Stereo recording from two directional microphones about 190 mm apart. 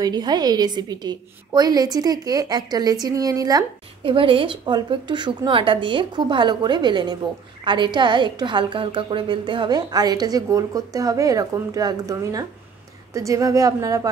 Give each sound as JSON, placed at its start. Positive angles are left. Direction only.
{"t": 0.0, "sound": "a woman's voice", "side_deg": -20}